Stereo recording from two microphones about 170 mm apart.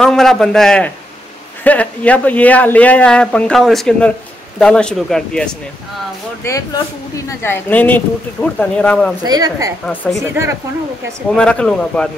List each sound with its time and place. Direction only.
0.0 s speech: centre (ahead or behind)
6.4 s speech: 20° left (ahead or behind)
9.2 s a woman's voice: 20° right (ahead or behind)
11.3 s speech: 5° left (ahead or behind)